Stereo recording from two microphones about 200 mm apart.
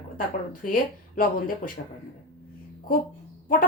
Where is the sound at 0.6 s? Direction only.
45° left (ahead or behind).